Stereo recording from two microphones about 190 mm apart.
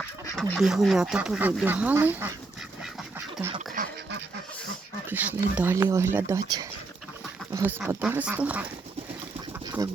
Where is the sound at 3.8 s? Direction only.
45° right (ahead or behind).